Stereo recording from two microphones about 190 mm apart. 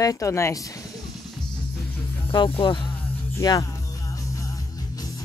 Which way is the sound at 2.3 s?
30° left (ahead or behind).